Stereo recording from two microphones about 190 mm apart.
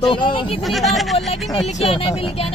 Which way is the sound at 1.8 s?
30° left (ahead or behind).